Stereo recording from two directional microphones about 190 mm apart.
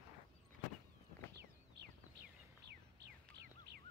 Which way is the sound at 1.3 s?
60° right (ahead or behind).